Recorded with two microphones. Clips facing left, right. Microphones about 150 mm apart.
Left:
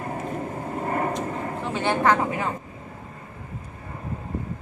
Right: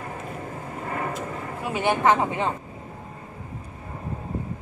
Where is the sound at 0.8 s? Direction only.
45° left (ahead or behind).